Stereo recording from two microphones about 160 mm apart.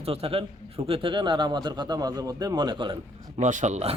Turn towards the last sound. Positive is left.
turn(degrees=-45)  # may be behind; listen again after turning